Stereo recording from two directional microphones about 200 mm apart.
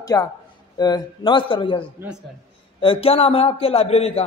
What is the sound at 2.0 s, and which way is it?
Speech, 10° right (ahead or behind).